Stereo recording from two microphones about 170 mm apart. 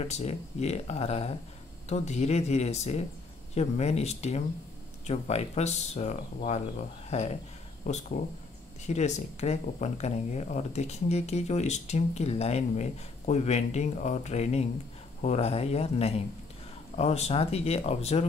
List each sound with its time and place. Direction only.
0.0 s speech: 40° left (ahead or behind)